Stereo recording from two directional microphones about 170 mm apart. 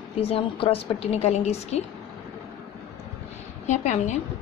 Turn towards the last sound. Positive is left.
turn(degrees=45)  # may be behind; listen again after turning